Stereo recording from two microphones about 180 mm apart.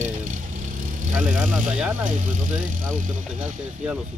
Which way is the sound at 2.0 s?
45° right (ahead or behind).